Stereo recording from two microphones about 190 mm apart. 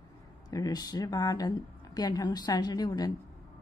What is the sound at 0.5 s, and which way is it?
A woman's voice, 20° left (ahead or behind).